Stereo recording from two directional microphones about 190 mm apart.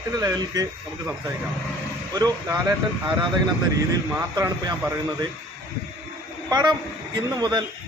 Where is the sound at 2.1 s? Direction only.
20° right (ahead or behind).